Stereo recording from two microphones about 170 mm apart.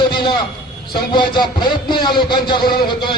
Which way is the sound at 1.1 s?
30° left (ahead or behind).